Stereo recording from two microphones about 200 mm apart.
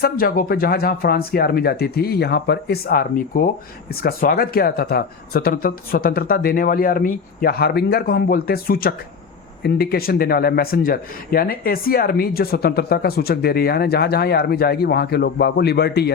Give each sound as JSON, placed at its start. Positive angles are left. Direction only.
{"t": 0.0, "sound": "speech", "side_deg": 50}